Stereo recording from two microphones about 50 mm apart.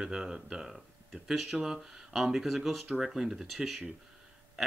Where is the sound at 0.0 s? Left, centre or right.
Centre.